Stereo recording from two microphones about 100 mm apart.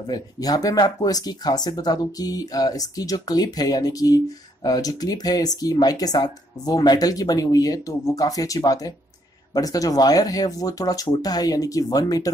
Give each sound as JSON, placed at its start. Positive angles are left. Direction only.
{"t": 0.0, "sound": "speech", "side_deg": 40}